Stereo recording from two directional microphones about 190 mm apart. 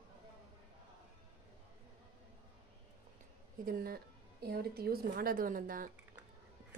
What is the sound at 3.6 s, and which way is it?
A woman's voice, 50° right (ahead or behind).